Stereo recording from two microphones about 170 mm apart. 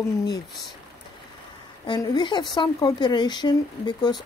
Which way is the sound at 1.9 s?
25° left (ahead or behind).